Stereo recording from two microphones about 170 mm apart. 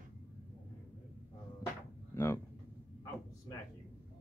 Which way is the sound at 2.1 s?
15° left (ahead or behind).